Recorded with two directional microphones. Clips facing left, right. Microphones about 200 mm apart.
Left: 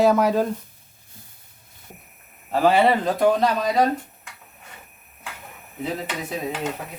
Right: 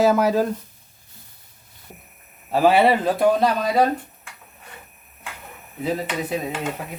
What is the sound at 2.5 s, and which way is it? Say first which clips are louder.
Speech: right 1 dB; 10° right (ahead or behind).